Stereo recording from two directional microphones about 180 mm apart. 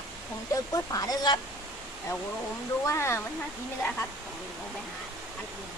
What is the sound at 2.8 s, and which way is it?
Speech, 15° left (ahead or behind).